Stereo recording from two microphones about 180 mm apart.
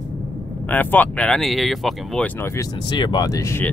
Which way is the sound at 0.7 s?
10° left (ahead or behind).